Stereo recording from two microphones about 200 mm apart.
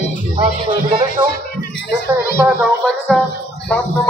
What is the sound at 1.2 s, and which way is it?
Speech, 25° right (ahead or behind).